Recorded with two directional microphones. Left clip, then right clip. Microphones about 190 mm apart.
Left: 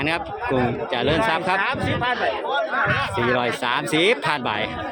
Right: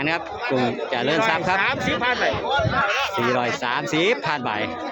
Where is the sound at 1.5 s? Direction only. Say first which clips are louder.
Right 1 dB; 15° right (ahead or behind).